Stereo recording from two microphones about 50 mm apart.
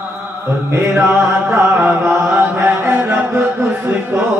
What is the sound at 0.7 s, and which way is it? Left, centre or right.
Chant, right.